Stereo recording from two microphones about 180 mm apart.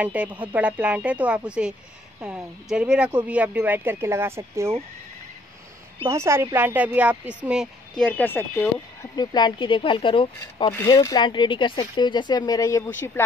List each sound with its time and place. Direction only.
0.0 s speech: 10° right (ahead or behind)
6.0 s speech: 15° right (ahead or behind); by 8.6 s 10° left (ahead or behind)
9.1 s speech: 20° left (ahead or behind)